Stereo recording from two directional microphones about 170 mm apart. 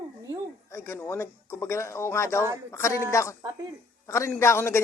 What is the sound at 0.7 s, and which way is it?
A woman's voice, 15° left (ahead or behind).